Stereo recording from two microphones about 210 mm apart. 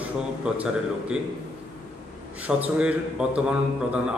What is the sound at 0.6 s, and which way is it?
Speech, 5° right (ahead or behind).